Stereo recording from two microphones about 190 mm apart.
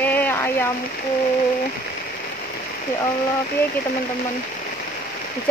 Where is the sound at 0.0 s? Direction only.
10° left (ahead or behind).